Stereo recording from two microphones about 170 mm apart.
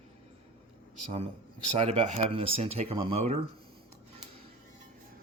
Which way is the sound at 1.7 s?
35° right (ahead or behind).